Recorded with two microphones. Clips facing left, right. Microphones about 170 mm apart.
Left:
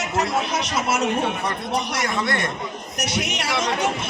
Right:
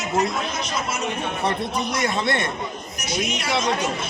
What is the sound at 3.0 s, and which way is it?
Speech, 70° left (ahead or behind).